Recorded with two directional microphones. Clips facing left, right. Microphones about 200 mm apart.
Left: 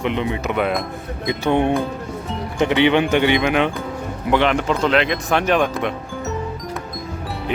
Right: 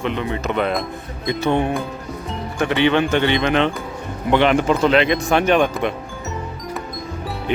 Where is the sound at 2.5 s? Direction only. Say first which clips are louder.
Left 1 dB; 20° left (ahead or behind).